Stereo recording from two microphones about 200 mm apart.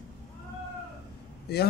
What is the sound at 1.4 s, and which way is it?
Speech, 55° left (ahead or behind).